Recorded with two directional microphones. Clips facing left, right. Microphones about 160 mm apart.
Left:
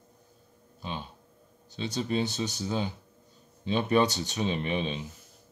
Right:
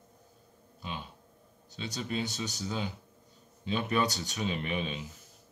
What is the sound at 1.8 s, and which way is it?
Speech, 30° left (ahead or behind).